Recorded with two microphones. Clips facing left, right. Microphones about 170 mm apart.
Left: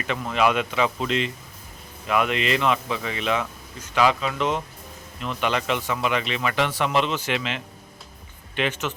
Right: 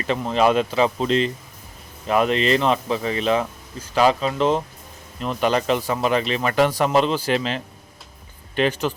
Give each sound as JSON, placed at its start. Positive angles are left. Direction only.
{"t": 0.1, "sound": "a man's voice", "side_deg": -30}